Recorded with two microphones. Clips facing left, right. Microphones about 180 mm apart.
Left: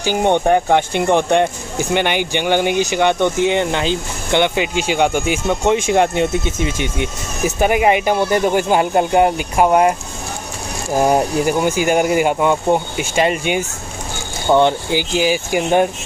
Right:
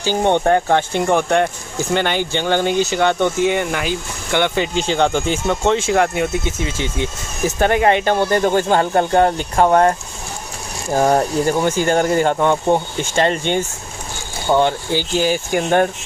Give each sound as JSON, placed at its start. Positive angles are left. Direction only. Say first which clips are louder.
{"t": 0.0, "sound": "speech", "louder": "left 1 dB", "side_deg": 15}